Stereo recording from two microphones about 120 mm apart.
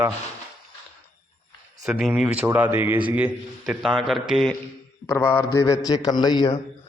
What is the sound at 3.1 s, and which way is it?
A man's voice, 5° right (ahead or behind).